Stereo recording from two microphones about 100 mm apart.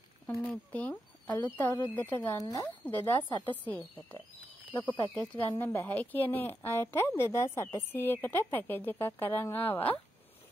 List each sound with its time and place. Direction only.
0.3 s speech: 15° left (ahead or behind)
2.3 s speech: 35° left (ahead or behind)
3.0 s speech: 20° left (ahead or behind)